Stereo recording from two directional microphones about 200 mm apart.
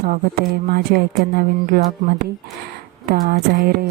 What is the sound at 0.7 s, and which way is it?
Speech, 50° right (ahead or behind).